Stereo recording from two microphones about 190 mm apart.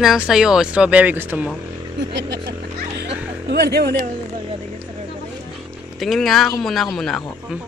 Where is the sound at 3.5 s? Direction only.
60° right (ahead or behind).